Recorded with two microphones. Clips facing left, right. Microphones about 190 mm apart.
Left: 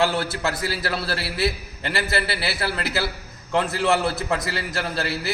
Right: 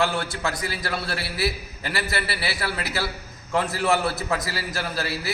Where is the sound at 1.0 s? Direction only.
30° left (ahead or behind).